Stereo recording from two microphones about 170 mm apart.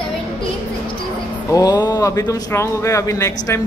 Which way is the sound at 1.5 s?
25° left (ahead or behind).